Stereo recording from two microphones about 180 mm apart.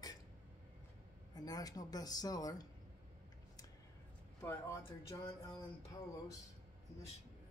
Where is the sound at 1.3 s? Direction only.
20° left (ahead or behind).